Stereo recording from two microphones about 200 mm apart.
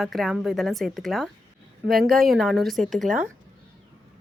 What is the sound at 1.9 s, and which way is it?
Speech, 50° right (ahead or behind).